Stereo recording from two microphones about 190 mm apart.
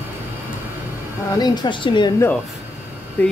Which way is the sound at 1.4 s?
20° left (ahead or behind).